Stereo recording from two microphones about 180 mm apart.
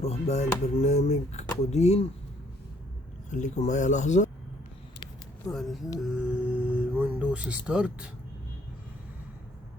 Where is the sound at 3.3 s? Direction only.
40° left (ahead or behind).